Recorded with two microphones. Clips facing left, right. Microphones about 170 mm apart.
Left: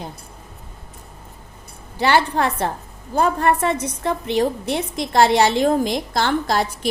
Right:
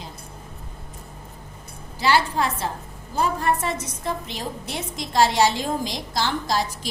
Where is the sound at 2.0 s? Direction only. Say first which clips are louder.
Left 3 dB; 60° left (ahead or behind).